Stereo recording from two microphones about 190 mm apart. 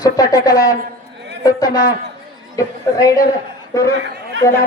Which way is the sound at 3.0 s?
20° left (ahead or behind).